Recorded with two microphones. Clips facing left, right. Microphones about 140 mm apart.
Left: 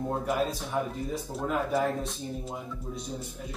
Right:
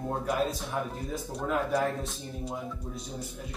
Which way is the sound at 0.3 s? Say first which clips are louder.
Right 1 dB; centre (ahead or behind).